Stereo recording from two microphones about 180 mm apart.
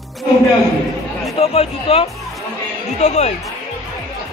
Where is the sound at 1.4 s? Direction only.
35° left (ahead or behind).